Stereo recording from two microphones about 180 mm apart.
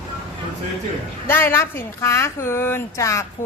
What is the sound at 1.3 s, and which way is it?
A woman's voice, 15° left (ahead or behind).